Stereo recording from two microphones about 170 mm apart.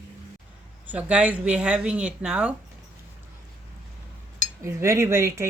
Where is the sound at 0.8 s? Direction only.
10° right (ahead or behind).